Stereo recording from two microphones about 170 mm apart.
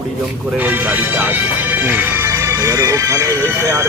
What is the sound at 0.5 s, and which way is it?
Speech, 10° right (ahead or behind).